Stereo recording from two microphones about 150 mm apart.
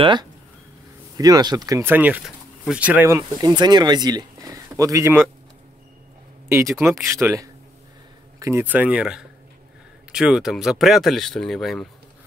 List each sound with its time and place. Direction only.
0.0 s speech: 30° right (ahead or behind)
7.1 s speech: 20° right (ahead or behind); by 11.9 s centre (ahead or behind)